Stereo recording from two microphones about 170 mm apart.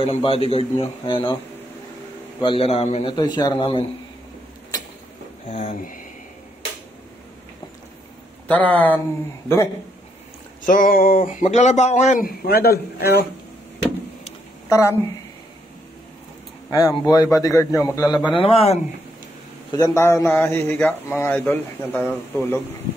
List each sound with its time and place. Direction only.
0.0 s a man's voice: 35° left (ahead or behind)
2.4 s a man's voice: 35° left (ahead or behind)
5.5 s speech: 45° left (ahead or behind)
8.5 s a man's voice: 10° left (ahead or behind)
10.6 s speech: 55° left (ahead or behind); by 13.2 s 75° left (ahead or behind)
14.7 s speech: 15° left (ahead or behind)
16.7 s a man's voice: 20° left (ahead or behind)
19.7 s a man's voice: 20° left (ahead or behind)